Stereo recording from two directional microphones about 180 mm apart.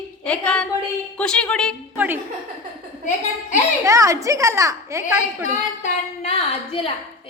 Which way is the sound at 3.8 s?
20° right (ahead or behind).